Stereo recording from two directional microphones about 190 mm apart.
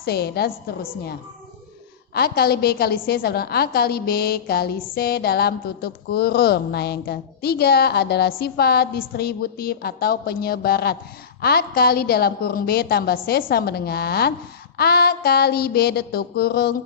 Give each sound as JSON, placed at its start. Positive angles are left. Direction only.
{"t": 0.0, "sound": "speech", "side_deg": 55}
{"t": 2.1, "sound": "speech", "side_deg": 55}